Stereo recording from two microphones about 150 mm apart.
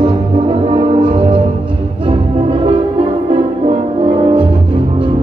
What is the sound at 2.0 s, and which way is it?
Music, 35° right (ahead or behind).